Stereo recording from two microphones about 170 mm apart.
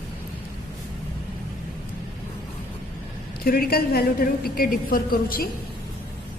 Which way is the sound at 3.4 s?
65° left (ahead or behind).